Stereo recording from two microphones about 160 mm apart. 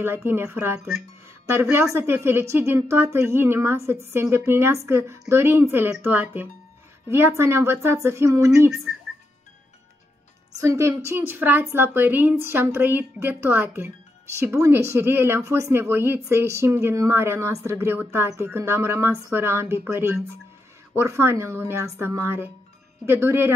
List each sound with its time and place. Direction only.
0.0 s speech: 15° right (ahead or behind)
1.5 s speech: 15° right (ahead or behind)
10.6 s speech: 20° right (ahead or behind)